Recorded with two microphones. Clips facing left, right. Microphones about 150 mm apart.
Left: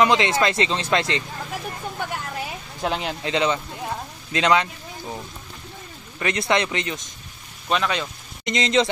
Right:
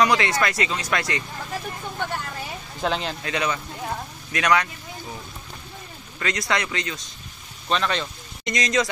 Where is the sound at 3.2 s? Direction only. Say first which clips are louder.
Left 4 dB; 25° left (ahead or behind).